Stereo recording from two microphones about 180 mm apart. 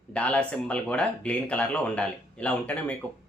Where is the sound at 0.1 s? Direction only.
5° left (ahead or behind).